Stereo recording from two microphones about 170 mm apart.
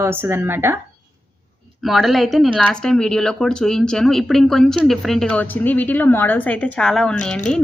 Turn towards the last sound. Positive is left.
turn(degrees=5)  # may be behind; listen again after turning